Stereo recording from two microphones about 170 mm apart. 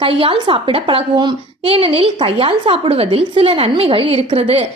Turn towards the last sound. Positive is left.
turn(degrees=-35)  # may be behind; listen again after turning